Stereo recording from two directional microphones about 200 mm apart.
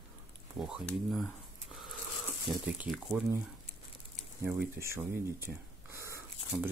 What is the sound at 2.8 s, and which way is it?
Speech, 5° right (ahead or behind).